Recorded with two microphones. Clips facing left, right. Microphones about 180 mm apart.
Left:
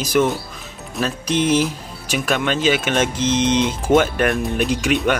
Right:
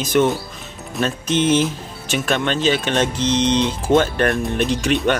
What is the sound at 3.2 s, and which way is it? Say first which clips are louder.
Speech: even; 15° right (ahead or behind).